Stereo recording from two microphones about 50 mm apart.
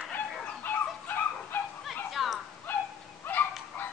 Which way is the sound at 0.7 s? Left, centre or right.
Left.